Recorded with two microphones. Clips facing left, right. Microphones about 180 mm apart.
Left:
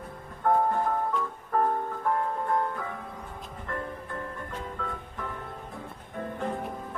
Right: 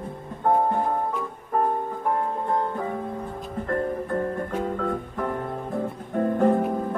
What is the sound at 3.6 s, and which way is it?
Music, 45° right (ahead or behind).